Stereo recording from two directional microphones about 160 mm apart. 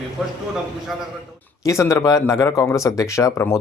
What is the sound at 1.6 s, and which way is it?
Speech, 20° left (ahead or behind).